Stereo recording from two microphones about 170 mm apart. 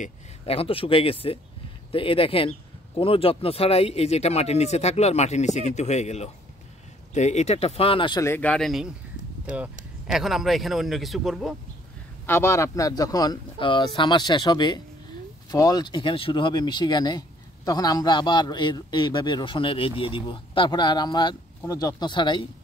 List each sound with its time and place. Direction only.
0.0 s speech: 35° left (ahead or behind)
8.4 s a man's voice: 5° left (ahead or behind)
10.1 s a man's voice: centre (ahead or behind)
12.3 s a man's voice: 15° left (ahead or behind)